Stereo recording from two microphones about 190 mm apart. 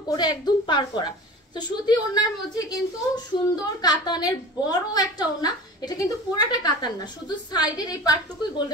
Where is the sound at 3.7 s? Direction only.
20° left (ahead or behind).